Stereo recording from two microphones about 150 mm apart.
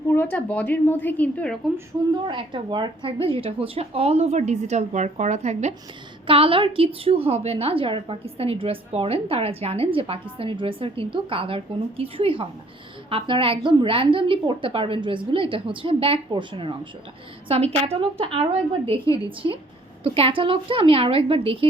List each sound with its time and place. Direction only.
0.1 s a woman's voice: 15° left (ahead or behind)
2.2 s a woman's voice: 30° right (ahead or behind); by 5.7 s 50° right (ahead or behind)
6.2 s a woman's voice: 35° right (ahead or behind)
19.4 s a woman's voice: 30° right (ahead or behind)